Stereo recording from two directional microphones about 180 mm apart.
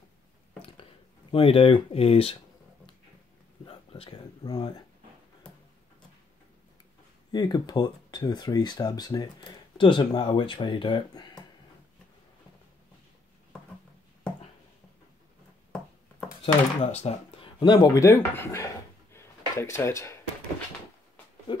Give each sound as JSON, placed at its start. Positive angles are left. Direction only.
{"t": 1.3, "sound": "speech", "side_deg": 30}
{"t": 3.6, "sound": "a sound", "side_deg": 30}
{"t": 7.3, "sound": "speech", "side_deg": 25}
{"t": 16.5, "sound": "speech", "side_deg": 30}
{"t": 19.1, "sound": "drawer open or close", "side_deg": 15}
{"t": 21.5, "sound": "speech", "side_deg": 30}